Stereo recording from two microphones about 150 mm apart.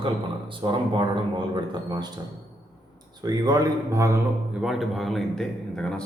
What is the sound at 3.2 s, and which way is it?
Speech, 25° right (ahead or behind).